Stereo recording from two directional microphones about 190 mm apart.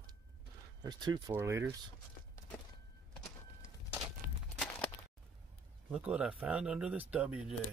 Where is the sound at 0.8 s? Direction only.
20° right (ahead or behind).